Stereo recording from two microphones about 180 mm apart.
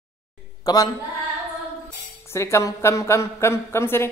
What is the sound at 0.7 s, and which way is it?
Speech, 20° left (ahead or behind).